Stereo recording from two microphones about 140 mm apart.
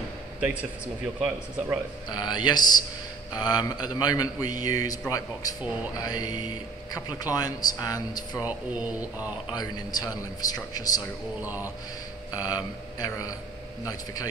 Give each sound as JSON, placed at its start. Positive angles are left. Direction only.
{"t": 0.4, "sound": "speech", "side_deg": -10}
{"t": 2.0, "sound": "a man's voice", "side_deg": 30}
{"t": 8.5, "sound": "speech", "side_deg": -10}
{"t": 9.5, "sound": "a man's voice", "side_deg": 30}
{"t": 11.4, "sound": "speech", "side_deg": -15}
{"t": 12.4, "sound": "a man's voice", "side_deg": 25}